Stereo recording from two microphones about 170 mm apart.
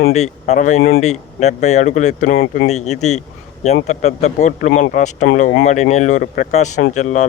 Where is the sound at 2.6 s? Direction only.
40° left (ahead or behind).